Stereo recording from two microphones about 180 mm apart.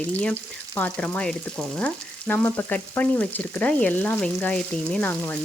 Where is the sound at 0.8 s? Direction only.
5° left (ahead or behind).